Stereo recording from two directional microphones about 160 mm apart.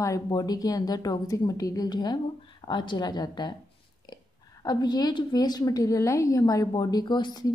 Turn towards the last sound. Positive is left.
turn(degrees=25)  # may be behind; listen again after turning